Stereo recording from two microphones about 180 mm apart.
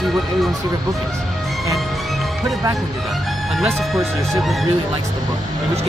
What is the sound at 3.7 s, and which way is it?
Speech, centre (ahead or behind).